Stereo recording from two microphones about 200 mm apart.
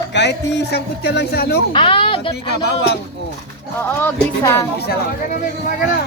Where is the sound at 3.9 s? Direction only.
10° left (ahead or behind).